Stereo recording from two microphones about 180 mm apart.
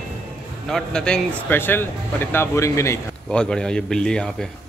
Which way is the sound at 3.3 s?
5° left (ahead or behind).